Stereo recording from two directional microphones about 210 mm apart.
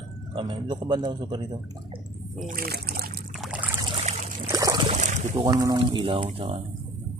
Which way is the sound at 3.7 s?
25° right (ahead or behind).